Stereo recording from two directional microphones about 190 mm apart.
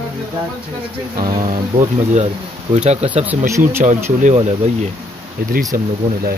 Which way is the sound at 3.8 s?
40° right (ahead or behind).